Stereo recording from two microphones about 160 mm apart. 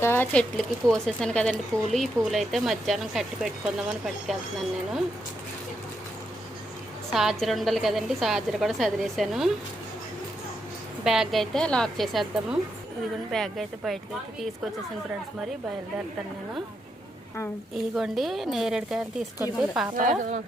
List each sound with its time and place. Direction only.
0.0 s speech: 15° left (ahead or behind)
0.5 s speech: 5° left (ahead or behind)
7.1 s speech: centre (ahead or behind)
11.0 s speech: centre (ahead or behind)
17.9 s speech: centre (ahead or behind)
20.0 s speech: 50° right (ahead or behind)